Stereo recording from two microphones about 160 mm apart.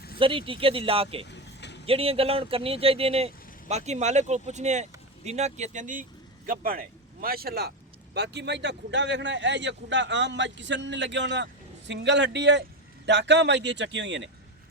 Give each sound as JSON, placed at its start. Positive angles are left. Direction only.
{"t": 0.2, "sound": "speech", "side_deg": -35}
{"t": 1.3, "sound": "vehicle", "side_deg": 90}
{"t": 1.9, "sound": "speech", "side_deg": -35}
{"t": 8.1, "sound": "a man's voice", "side_deg": -90}